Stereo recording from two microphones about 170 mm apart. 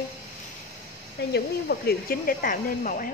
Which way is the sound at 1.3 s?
65° left (ahead or behind).